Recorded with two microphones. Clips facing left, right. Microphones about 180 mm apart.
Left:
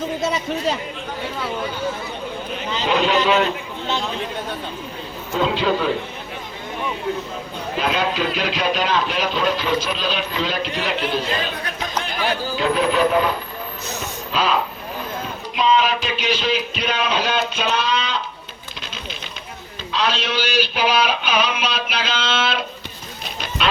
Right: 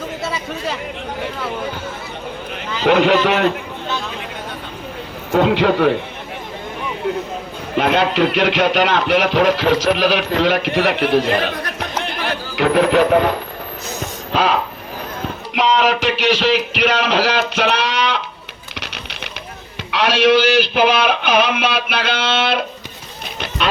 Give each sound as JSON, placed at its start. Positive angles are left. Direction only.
{"t": 2.8, "sound": "speech", "side_deg": -70}
{"t": 5.3, "sound": "speech", "side_deg": -65}
{"t": 7.8, "sound": "speech", "side_deg": -65}
{"t": 15.5, "sound": "speech", "side_deg": -75}
{"t": 18.8, "sound": "a sound", "side_deg": -75}
{"t": 19.9, "sound": "speech", "side_deg": -75}